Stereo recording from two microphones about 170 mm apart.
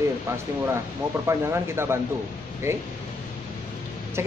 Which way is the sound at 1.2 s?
15° right (ahead or behind).